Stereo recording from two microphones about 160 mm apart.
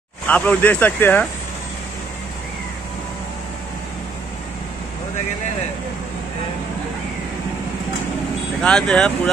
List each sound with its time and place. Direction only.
0.3 s speech: 10° left (ahead or behind)
8.6 s speech: 5° left (ahead or behind)